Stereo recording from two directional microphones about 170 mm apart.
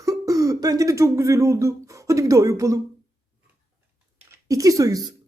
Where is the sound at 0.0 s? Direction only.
20° right (ahead or behind).